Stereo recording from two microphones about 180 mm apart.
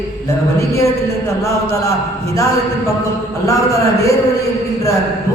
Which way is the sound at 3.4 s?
20° left (ahead or behind).